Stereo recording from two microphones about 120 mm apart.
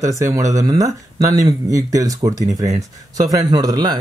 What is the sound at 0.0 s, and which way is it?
Speech, 25° right (ahead or behind).